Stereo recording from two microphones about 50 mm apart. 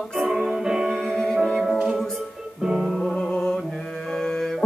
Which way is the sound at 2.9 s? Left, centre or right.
Centre.